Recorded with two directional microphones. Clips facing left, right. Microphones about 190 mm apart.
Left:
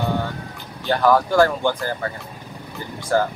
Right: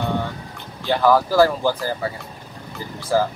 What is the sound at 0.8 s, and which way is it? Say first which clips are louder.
Speech: even; centre (ahead or behind).